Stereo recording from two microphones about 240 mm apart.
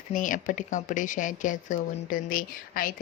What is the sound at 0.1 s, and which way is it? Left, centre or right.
Speech, left.